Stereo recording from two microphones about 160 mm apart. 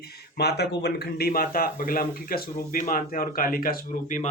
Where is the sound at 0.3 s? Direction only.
90° left; by 4.2 s 60° left (ahead or behind).